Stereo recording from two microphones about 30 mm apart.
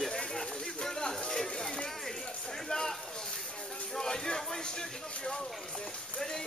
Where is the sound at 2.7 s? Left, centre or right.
Centre.